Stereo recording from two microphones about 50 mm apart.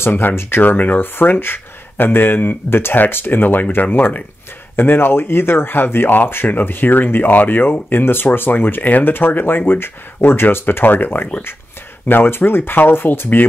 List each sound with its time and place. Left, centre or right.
0.1 s speech: left